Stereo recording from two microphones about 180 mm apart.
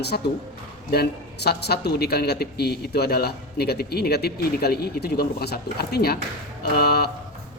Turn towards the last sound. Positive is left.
turn(degrees=60)  # may be behind; listen again after turning